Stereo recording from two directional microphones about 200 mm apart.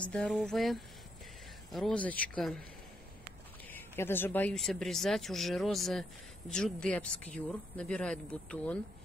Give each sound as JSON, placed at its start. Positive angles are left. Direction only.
{"t": 0.0, "sound": "speech", "side_deg": 5}
{"t": 3.7, "sound": "speech", "side_deg": 10}